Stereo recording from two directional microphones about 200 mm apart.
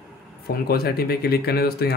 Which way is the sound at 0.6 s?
50° left (ahead or behind).